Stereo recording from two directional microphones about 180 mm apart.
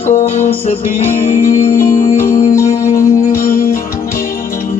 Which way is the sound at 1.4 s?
15° left (ahead or behind).